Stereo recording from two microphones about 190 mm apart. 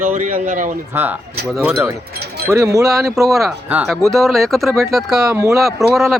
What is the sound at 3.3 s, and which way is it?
Speech, centre (ahead or behind).